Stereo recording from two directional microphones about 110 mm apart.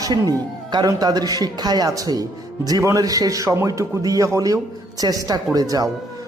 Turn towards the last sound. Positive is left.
turn(degrees=-35)  # may be behind; listen again after turning